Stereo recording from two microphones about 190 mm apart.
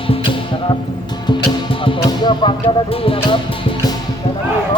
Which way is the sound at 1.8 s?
25° left (ahead or behind).